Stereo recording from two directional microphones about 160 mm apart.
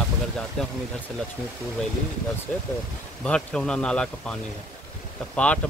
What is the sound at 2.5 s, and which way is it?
Speech, 5° left (ahead or behind).